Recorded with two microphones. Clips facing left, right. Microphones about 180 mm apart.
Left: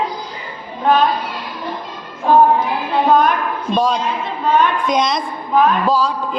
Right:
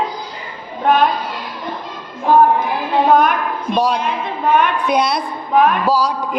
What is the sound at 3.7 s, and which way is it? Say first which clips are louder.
A man's voice: even; 10° right (ahead or behind).